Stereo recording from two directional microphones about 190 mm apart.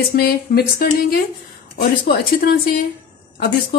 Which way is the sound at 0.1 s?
55° left (ahead or behind).